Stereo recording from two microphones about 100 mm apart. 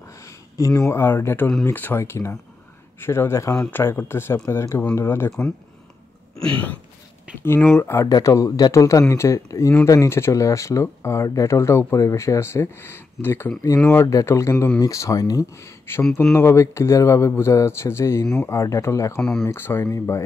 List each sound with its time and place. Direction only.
0.6 s speech: 30° left (ahead or behind)
6.4 s speech: 15° left (ahead or behind)
7.7 s speech: 30° left (ahead or behind)